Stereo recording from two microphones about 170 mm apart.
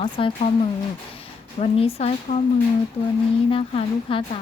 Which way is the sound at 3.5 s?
30° left (ahead or behind).